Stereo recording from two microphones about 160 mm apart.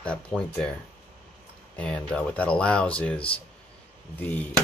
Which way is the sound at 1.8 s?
5° left (ahead or behind).